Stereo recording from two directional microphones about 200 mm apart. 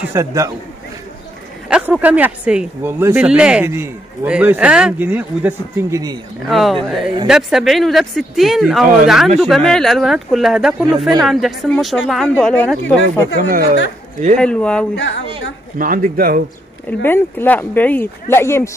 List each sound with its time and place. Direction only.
0.1 s speech: 15° right (ahead or behind)
1.7 s speech: 5° right (ahead or behind)
6.4 s speech: centre (ahead or behind)
13.4 s speech: 45° right (ahead or behind)
14.3 s speech: 5° left (ahead or behind)
15.0 s a woman's voice: 65° left (ahead or behind)
15.8 s speech: 45° right (ahead or behind)
17.0 s speech: 10° left (ahead or behind)